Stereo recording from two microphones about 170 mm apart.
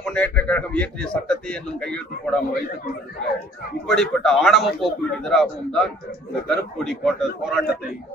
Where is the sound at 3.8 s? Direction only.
Centre (ahead or behind).